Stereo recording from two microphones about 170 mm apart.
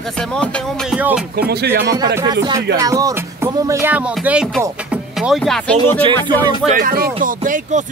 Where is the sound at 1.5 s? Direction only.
70° right (ahead or behind).